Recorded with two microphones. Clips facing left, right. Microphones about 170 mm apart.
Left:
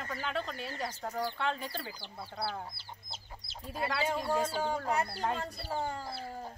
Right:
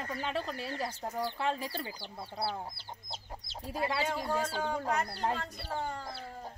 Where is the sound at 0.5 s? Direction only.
Centre (ahead or behind).